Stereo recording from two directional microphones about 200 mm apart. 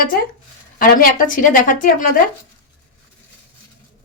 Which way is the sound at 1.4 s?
40° left (ahead or behind).